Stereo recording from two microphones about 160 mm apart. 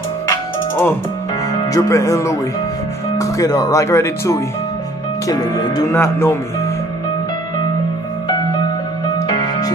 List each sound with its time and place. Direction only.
0.3 s music: 15° left (ahead or behind)
1.7 s speech: 20° left (ahead or behind)
9.3 s music: 25° left (ahead or behind)